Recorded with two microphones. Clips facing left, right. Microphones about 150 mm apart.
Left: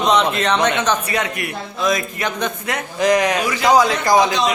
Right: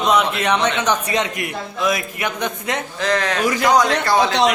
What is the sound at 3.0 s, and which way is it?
Speech, 15° left (ahead or behind).